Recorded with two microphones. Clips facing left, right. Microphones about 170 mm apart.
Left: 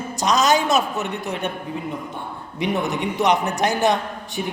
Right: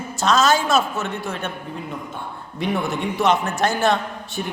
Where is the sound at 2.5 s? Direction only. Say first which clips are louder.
Left 1 dB; 20° left (ahead or behind).